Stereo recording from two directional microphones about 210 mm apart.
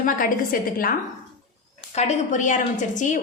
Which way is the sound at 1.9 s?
35° left (ahead or behind).